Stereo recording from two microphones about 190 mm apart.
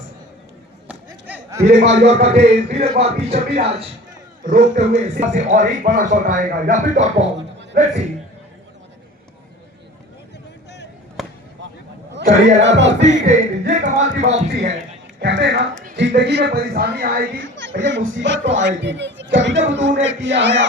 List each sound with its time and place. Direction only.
0.9 s chop: 10° right (ahead or behind)
2.0 s a man's voice: 35° right (ahead or behind)
4.4 s a man's voice: 45° right (ahead or behind)
11.2 s basketball bounce: centre (ahead or behind)
12.2 s a man's voice: 40° right (ahead or behind)
12.6 s speech: 70° right (ahead or behind)
13.2 s a man's voice: 40° right (ahead or behind)
15.2 s speech: 65° right (ahead or behind); by 17.2 s 50° right (ahead or behind)
17.4 s a sound: 70° right (ahead or behind)
17.8 s speech: 80° right